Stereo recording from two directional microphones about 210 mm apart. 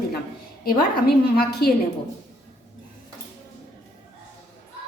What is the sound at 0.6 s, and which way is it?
A woman's voice, 45° left (ahead or behind).